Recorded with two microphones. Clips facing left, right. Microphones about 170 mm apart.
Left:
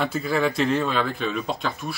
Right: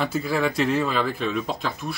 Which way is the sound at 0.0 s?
Centre (ahead or behind).